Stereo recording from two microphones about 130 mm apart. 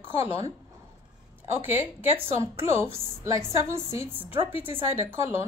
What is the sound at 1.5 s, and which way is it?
A woman's voice, 15° right (ahead or behind).